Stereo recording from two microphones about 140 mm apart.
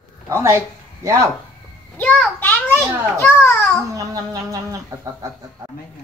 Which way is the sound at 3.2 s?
15° left (ahead or behind).